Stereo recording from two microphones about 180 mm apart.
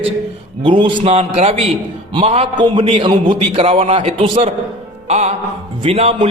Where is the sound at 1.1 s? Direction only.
35° right (ahead or behind).